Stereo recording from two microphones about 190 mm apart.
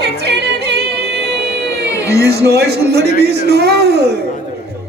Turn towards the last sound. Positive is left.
turn(degrees=-60)  # may be behind; listen again after turning